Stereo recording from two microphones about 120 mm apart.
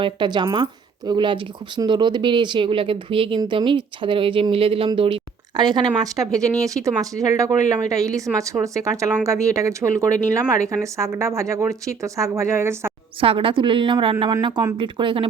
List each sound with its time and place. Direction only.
0.0 s speech: 40° right (ahead or behind); by 12.9 s 20° right (ahead or behind)
13.1 s speech: 50° right (ahead or behind)